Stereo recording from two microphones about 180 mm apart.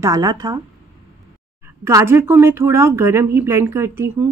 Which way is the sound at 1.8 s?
15° right (ahead or behind).